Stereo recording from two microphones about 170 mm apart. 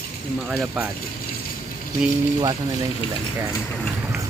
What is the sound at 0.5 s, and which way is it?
Speech, 5° right (ahead or behind).